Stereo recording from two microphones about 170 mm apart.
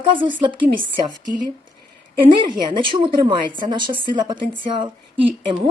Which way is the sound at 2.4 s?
30° right (ahead or behind).